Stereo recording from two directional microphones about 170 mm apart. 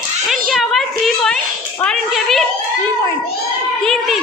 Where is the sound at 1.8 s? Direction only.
Centre (ahead or behind).